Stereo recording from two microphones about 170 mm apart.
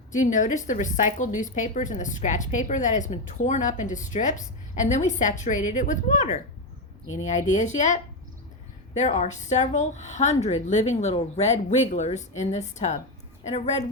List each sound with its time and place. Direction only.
0.1 s a woman's voice: 45° left (ahead or behind)
9.0 s a woman's voice: 45° left (ahead or behind)